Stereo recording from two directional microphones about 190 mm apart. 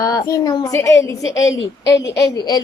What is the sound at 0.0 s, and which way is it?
A woman's voice, 20° left (ahead or behind).